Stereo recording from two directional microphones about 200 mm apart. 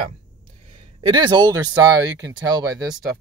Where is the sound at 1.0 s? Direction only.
20° right (ahead or behind).